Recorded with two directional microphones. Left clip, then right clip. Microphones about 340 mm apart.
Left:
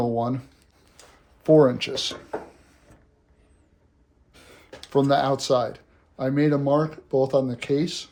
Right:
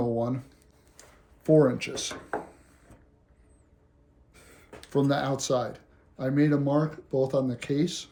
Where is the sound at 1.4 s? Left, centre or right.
Centre.